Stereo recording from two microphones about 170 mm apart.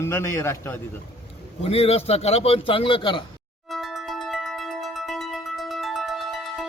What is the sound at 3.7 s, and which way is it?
Music, centre (ahead or behind).